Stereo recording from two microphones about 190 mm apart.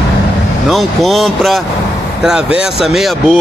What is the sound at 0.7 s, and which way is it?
Speech, centre (ahead or behind).